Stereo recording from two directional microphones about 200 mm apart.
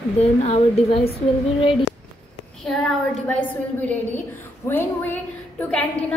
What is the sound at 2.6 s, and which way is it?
Speech, 5° left (ahead or behind).